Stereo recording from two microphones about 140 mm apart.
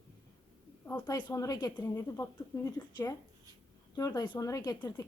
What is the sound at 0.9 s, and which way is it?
Speech, 20° left (ahead or behind).